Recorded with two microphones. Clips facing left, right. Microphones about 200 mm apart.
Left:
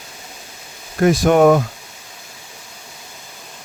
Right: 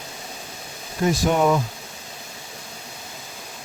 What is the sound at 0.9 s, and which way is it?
Speech, 70° left (ahead or behind).